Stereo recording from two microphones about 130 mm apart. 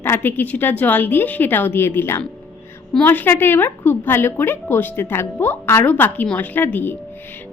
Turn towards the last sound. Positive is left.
turn(degrees=15)  # may be behind; listen again after turning